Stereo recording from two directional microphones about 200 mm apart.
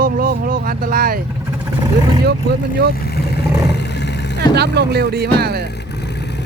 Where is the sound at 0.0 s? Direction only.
45° right (ahead or behind).